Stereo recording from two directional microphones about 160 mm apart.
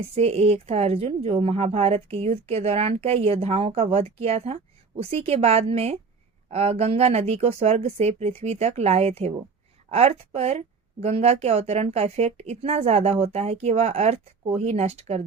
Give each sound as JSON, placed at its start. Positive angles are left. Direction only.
{"t": 0.1, "sound": "a woman's voice", "side_deg": -40}